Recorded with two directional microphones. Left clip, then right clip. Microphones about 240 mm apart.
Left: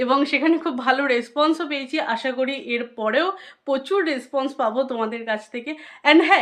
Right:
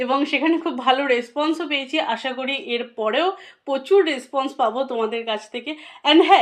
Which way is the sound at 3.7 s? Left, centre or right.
Left.